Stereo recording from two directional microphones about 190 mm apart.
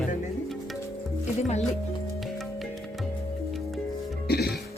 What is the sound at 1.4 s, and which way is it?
Speech, 35° left (ahead or behind).